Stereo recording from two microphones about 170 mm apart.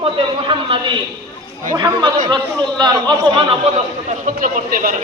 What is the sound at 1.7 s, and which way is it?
A man's voice, 25° right (ahead or behind).